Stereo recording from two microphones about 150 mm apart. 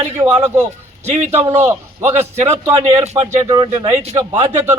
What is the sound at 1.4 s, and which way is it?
A man's voice, 20° right (ahead or behind).